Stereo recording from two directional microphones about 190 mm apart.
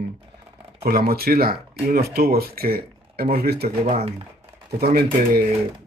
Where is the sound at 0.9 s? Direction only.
55° right (ahead or behind).